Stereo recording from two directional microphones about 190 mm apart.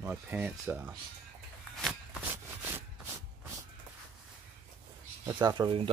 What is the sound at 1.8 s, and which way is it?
Walk, centre (ahead or behind).